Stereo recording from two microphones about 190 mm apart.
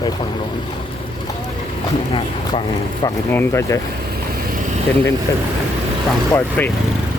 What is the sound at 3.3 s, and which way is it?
Speech, 10° left (ahead or behind).